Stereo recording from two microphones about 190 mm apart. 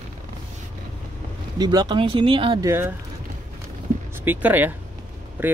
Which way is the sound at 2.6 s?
10° right (ahead or behind).